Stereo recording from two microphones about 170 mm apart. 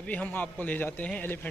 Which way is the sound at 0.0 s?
10° left (ahead or behind).